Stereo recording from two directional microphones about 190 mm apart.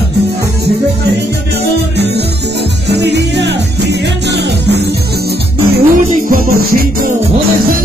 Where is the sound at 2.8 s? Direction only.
65° right (ahead or behind).